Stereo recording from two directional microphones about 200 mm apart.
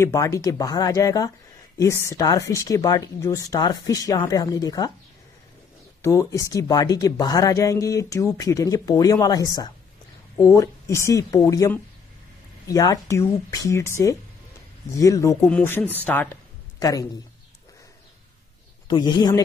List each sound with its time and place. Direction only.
0.0 s speech: 15° left (ahead or behind)
6.0 s speech: 15° left (ahead or behind)
18.9 s a man's voice: 20° left (ahead or behind)